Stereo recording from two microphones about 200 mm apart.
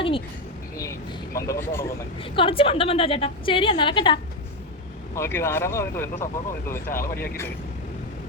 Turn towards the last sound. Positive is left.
turn(degrees=50)  # may be behind; listen again after turning